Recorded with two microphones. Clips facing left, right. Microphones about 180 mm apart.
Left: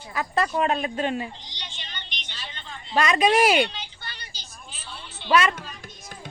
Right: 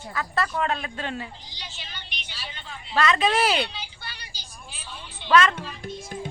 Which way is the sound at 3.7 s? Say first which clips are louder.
Even; 10° right (ahead or behind).